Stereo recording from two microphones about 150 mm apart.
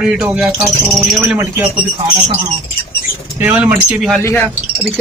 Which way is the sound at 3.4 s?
10° right (ahead or behind).